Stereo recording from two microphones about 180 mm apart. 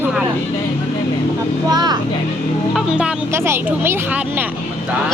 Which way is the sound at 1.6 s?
20° right (ahead or behind).